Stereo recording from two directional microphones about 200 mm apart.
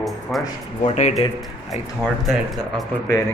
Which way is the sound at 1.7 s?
Centre (ahead or behind).